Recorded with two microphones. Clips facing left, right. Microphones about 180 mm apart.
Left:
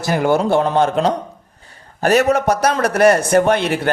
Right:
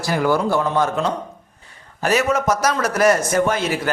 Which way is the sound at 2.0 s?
65° left (ahead or behind).